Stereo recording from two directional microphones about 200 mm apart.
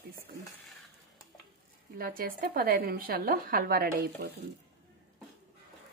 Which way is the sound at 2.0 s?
45° right (ahead or behind).